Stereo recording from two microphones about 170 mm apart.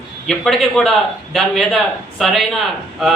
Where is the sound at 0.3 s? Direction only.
Centre (ahead or behind).